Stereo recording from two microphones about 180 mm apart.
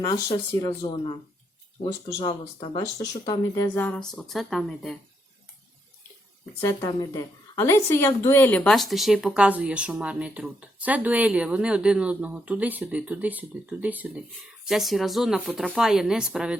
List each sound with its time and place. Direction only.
0.0 s speech: 20° left (ahead or behind)
3.8 s speech: 5° left (ahead or behind)
6.6 s a woman's voice: 15° left (ahead or behind); by 16.6 s 5° right (ahead or behind)